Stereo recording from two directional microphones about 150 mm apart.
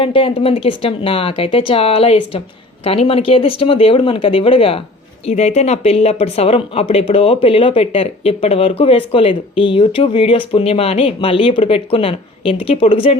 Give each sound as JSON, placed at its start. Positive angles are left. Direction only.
{"t": 0.0, "sound": "speech", "side_deg": 35}